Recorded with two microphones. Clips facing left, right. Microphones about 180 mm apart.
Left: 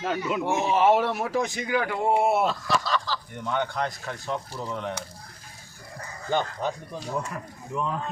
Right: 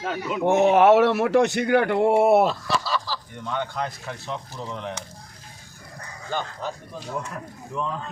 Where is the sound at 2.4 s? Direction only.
5° right (ahead or behind).